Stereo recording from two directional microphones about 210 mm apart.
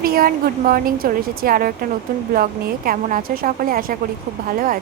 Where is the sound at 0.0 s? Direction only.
45° right (ahead or behind).